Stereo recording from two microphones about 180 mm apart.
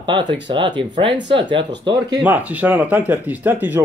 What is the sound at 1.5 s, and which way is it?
Speech, 80° right.